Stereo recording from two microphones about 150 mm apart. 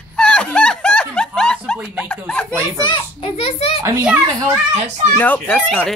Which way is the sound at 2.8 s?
35° left (ahead or behind).